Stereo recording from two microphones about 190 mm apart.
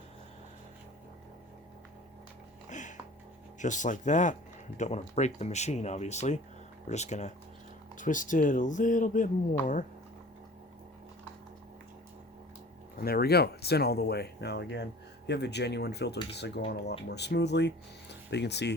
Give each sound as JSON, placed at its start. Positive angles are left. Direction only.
{"t": 2.6, "sound": "music", "side_deg": 40}
{"t": 3.6, "sound": "speech", "side_deg": 40}
{"t": 13.0, "sound": "speech", "side_deg": 55}